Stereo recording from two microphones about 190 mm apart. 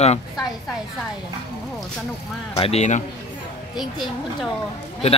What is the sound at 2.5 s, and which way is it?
Speech, 30° left (ahead or behind).